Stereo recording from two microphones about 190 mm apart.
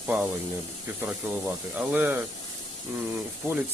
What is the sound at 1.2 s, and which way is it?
Speech, 10° right (ahead or behind).